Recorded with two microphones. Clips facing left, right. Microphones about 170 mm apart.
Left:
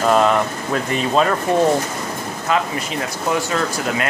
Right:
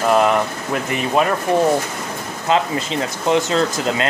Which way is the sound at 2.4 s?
25° right (ahead or behind).